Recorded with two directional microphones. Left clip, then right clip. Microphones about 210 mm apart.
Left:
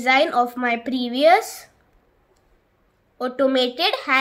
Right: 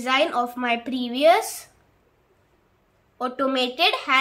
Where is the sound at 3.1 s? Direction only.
20° left (ahead or behind).